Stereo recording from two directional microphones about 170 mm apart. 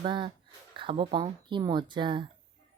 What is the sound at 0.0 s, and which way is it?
Speech, 30° right (ahead or behind).